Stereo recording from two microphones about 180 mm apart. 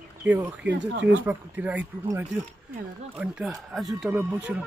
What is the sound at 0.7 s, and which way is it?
Speech, 90° right.